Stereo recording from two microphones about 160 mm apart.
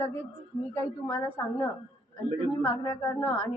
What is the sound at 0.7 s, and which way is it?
A woman's voice, 20° left (ahead or behind).